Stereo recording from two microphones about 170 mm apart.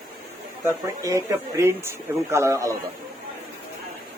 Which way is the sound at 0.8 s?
20° right (ahead or behind).